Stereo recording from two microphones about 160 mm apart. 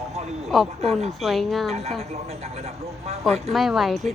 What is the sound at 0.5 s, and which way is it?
Speech, centre (ahead or behind).